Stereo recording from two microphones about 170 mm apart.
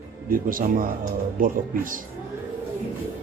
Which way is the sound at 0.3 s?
55° right (ahead or behind).